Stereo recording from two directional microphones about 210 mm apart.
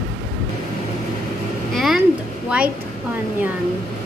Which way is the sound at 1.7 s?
Centre (ahead or behind).